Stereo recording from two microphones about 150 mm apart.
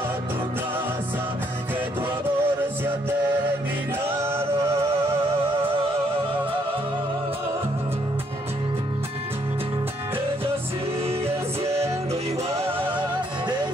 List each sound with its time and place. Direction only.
2.4 s music: 15° right (ahead or behind)
4.3 s music: 15° right (ahead or behind)
11.6 s music: 45° right (ahead or behind)